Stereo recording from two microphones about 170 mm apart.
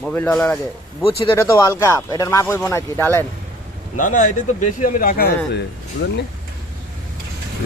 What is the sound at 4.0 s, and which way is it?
A man's voice, 50° left (ahead or behind).